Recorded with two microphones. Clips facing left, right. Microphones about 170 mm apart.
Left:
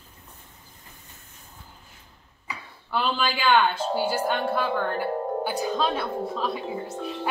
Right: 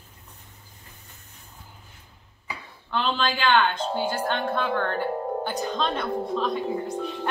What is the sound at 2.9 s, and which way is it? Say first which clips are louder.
A woman's voice: even; 5° left (ahead or behind).